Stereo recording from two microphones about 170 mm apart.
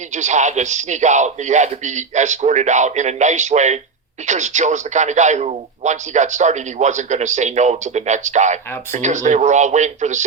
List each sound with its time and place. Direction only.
0.1 s speech: 45° right (ahead or behind)